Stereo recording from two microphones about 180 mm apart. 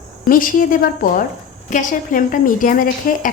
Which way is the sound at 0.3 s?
50° left (ahead or behind).